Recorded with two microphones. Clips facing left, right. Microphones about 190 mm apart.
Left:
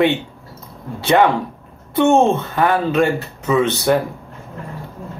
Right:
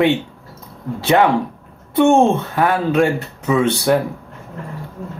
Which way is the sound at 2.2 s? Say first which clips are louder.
Right 1 dB; centre (ahead or behind).